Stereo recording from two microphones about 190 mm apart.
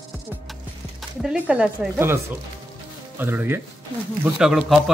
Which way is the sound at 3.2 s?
10° right (ahead or behind).